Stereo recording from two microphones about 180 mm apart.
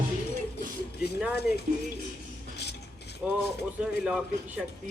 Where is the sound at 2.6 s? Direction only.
65° left (ahead or behind).